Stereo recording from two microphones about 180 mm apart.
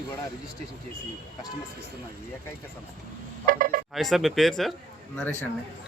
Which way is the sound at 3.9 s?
Centre (ahead or behind).